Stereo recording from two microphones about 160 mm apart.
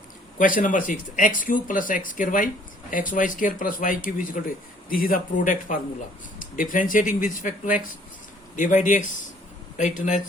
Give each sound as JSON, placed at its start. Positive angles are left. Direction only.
{"t": 0.3, "sound": "speech", "side_deg": 55}